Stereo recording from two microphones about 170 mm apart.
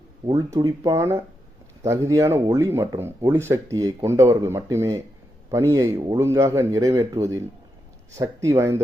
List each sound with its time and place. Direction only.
0.3 s speech: 20° right (ahead or behind)